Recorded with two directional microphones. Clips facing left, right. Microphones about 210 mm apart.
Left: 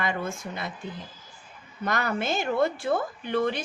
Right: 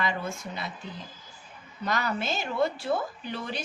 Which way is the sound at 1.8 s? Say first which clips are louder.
Left 2 dB; 55° left (ahead or behind).